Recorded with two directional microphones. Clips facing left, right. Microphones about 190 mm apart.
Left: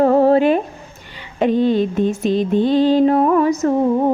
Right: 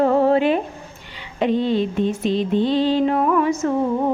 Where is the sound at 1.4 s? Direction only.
45° left (ahead or behind).